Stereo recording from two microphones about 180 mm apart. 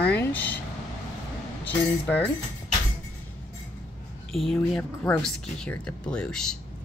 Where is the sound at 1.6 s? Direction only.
10° left (ahead or behind).